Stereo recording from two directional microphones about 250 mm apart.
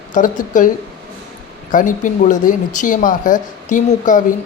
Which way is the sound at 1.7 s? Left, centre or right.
Left.